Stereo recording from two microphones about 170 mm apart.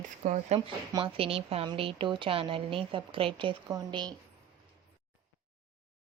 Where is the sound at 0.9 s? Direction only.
30° right (ahead or behind).